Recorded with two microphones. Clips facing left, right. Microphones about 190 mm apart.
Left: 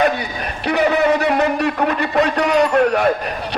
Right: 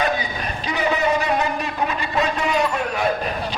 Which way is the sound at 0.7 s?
65° left (ahead or behind).